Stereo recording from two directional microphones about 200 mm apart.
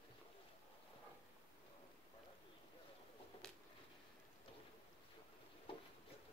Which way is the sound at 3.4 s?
5° left (ahead or behind).